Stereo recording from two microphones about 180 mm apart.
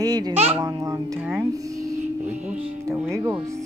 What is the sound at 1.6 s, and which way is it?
Music, 15° right (ahead or behind).